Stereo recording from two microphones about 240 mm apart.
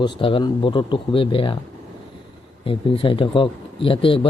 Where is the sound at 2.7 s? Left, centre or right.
Left.